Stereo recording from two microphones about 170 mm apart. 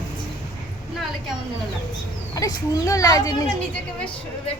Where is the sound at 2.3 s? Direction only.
20° left (ahead or behind).